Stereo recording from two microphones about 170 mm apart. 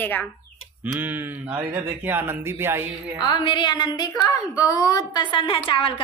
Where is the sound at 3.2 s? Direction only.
25° left (ahead or behind).